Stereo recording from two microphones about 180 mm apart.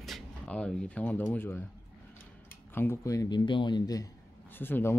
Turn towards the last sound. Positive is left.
turn(degrees=10)  # may be behind; listen again after turning